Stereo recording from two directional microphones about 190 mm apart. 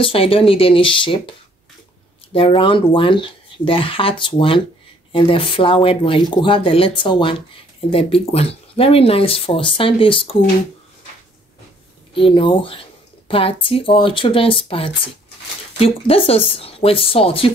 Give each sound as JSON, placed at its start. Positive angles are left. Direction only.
{"t": 0.0, "sound": "speech", "side_deg": 30}
{"t": 2.3, "sound": "speech", "side_deg": 30}
{"t": 12.1, "sound": "speech", "side_deg": 25}